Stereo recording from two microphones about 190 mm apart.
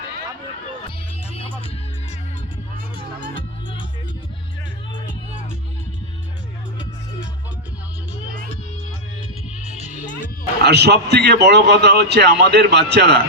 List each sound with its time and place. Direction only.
0.9 s music: 30° left (ahead or behind)
9.6 s music: 40° left (ahead or behind)
10.6 s a man's voice: 60° right (ahead or behind)